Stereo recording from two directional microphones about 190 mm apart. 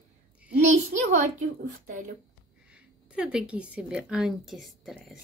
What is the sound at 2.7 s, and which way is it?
Speech, 5° right (ahead or behind).